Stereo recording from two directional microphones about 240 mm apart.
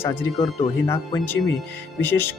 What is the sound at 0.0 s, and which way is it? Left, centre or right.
Speech, centre.